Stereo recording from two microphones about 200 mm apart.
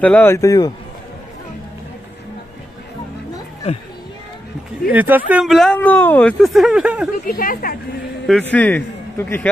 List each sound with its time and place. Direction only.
0.0 s a man's voice: 10° left (ahead or behind)
4.9 s speech: 10° right (ahead or behind)
7.2 s speech: 45° left (ahead or behind)
8.3 s a man's voice: 5° left (ahead or behind)